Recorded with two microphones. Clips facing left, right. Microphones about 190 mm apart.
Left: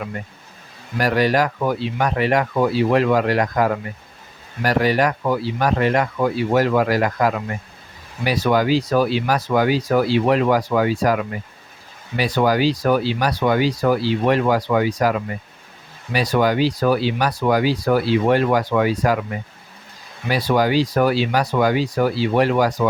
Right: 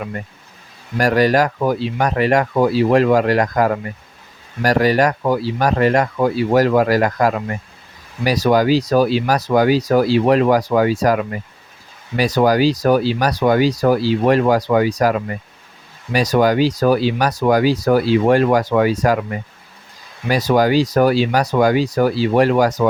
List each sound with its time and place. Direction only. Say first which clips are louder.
0.9 s speech: right 3 dB; 45° right (ahead or behind)
16.1 s speech: right 3 dB; 45° right (ahead or behind)
20.2 s speech: right 3 dB; 45° right (ahead or behind)